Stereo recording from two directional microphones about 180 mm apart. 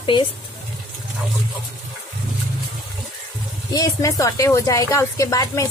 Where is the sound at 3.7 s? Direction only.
20° left (ahead or behind).